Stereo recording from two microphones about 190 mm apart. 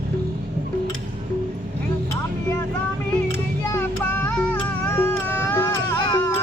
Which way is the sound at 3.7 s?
10° left (ahead or behind).